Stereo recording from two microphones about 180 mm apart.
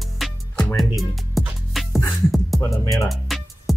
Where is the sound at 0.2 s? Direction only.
Centre (ahead or behind).